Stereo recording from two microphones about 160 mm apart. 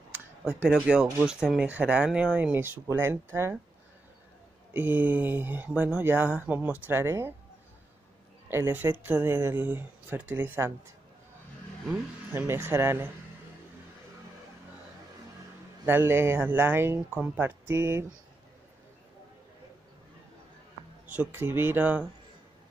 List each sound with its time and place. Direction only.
0.1 s a sound: 10° right (ahead or behind)
0.8 s speech: 5° right (ahead or behind)
4.7 s speech: 10° right (ahead or behind)
8.5 s speech: 15° right (ahead or behind)
12.3 s speech: 15° right (ahead or behind)
15.8 s speech: 15° right (ahead or behind)
21.2 s speech: 15° right (ahead or behind)